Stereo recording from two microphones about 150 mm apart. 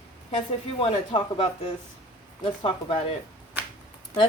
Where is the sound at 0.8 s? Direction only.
35° left (ahead or behind).